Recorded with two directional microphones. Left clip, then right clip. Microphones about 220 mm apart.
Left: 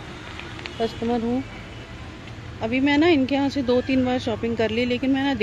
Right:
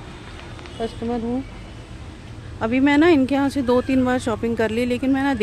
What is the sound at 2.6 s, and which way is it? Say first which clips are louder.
Speech: right 3 dB; 20° right (ahead or behind).